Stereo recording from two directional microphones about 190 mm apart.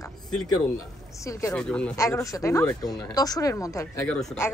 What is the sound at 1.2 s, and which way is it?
Speech, 15° left (ahead or behind).